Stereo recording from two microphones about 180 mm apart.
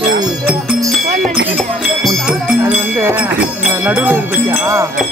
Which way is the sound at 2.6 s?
10° right (ahead or behind).